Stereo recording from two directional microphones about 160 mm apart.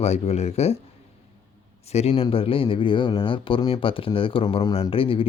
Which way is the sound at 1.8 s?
40° left (ahead or behind).